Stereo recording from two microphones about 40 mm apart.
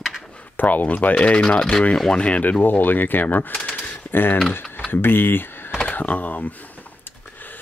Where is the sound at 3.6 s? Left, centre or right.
Left.